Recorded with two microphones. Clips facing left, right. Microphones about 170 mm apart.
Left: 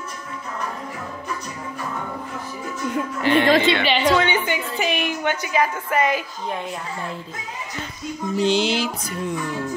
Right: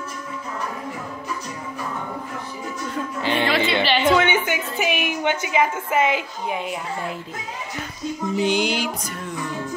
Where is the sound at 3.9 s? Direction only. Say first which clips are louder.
Right 3 dB; centre (ahead or behind).